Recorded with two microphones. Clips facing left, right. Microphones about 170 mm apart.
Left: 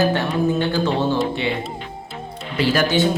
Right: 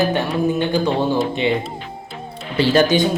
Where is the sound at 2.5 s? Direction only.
25° right (ahead or behind).